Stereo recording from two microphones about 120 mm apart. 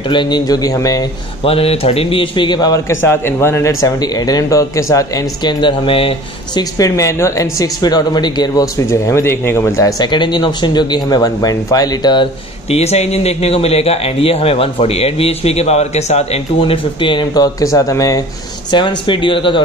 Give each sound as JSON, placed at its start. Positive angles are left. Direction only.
{"t": 0.0, "sound": "speech", "side_deg": 40}
{"t": 1.4, "sound": "a man's voice", "side_deg": 55}
{"t": 3.0, "sound": "speech", "side_deg": 20}
{"t": 5.4, "sound": "speech", "side_deg": 40}
{"t": 6.6, "sound": "speech", "side_deg": 30}
{"t": 12.6, "sound": "speech", "side_deg": 60}
{"t": 18.7, "sound": "a man's voice", "side_deg": 40}